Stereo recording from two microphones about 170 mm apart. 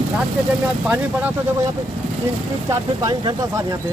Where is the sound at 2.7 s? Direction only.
20° right (ahead or behind).